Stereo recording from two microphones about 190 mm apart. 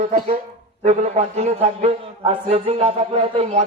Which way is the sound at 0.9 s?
35° right (ahead or behind).